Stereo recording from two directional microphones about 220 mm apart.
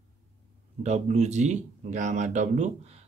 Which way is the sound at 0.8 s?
30° right (ahead or behind).